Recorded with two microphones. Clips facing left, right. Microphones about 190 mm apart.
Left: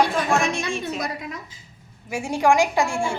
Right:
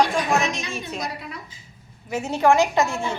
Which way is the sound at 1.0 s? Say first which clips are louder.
Left 2 dB; 45° left (ahead or behind).